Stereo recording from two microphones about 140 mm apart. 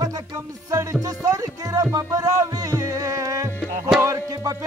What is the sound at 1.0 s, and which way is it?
Music, 25° right (ahead or behind).